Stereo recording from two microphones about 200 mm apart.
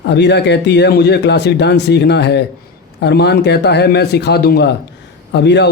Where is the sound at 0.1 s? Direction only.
60° left (ahead or behind).